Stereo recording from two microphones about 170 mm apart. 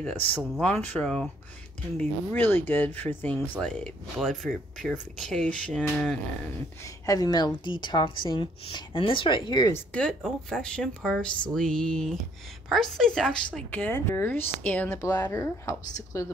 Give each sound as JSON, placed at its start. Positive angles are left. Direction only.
{"t": 0.0, "sound": "speech", "side_deg": 10}
{"t": 7.1, "sound": "a woman's voice", "side_deg": 20}
{"t": 9.8, "sound": "speech", "side_deg": 5}